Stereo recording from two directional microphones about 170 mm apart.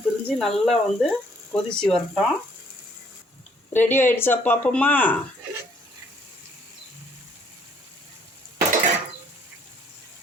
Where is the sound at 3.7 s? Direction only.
10° left (ahead or behind).